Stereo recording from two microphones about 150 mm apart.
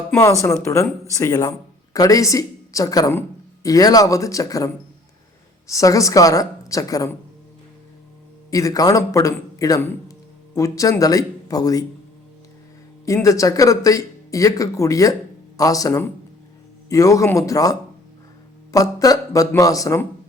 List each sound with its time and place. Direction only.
0.1 s speech: 20° left (ahead or behind)
8.4 s speech: 20° left (ahead or behind)
13.1 s speech: 20° left (ahead or behind)